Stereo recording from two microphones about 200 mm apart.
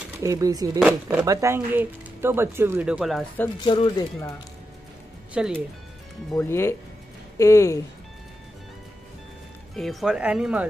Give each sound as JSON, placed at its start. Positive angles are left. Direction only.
{"t": 0.2, "sound": "speech", "side_deg": -15}
{"t": 3.6, "sound": "speech", "side_deg": 20}
{"t": 5.3, "sound": "speech", "side_deg": -5}
{"t": 6.5, "sound": "speech", "side_deg": 15}
{"t": 9.8, "sound": "speech", "side_deg": 0}